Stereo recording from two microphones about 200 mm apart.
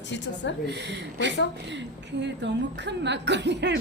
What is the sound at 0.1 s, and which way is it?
Speech, 65° left (ahead or behind).